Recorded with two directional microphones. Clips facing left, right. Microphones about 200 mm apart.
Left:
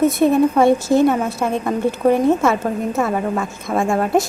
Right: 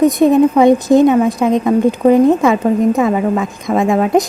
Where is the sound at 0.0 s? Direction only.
15° right (ahead or behind).